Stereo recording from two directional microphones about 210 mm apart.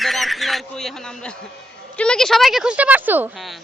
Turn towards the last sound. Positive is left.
turn(degrees=-5)  # may be behind; listen again after turning